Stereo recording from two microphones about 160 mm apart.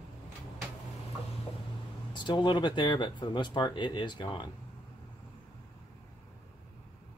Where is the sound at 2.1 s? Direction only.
30° left (ahead or behind).